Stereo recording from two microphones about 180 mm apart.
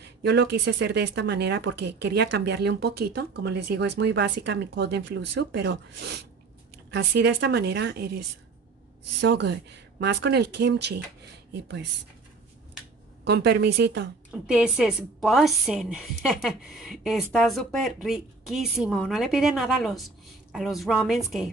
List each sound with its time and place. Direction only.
0.0 s speech: 65° right (ahead or behind)
9.2 s speech: 75° right (ahead or behind)
13.2 s speech: 65° right (ahead or behind)
14.3 s a woman's voice: 5° right (ahead or behind)